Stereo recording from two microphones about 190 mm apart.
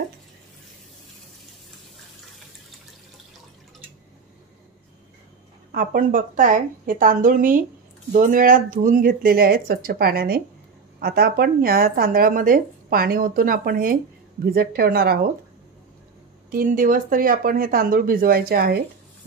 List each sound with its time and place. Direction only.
5.7 s speech: 50° right (ahead or behind)
16.5 s speech: 45° right (ahead or behind)